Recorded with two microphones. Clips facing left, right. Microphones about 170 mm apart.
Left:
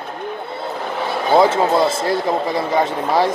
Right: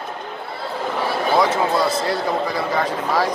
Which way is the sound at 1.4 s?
25° left (ahead or behind).